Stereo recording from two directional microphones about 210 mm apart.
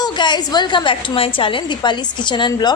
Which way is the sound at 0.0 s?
20° left (ahead or behind).